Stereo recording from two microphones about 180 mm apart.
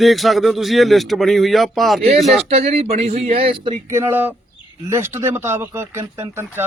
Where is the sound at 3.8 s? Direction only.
15° right (ahead or behind).